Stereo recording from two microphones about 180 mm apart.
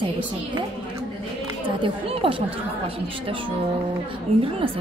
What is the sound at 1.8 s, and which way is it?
A woman's voice, 30° right (ahead or behind).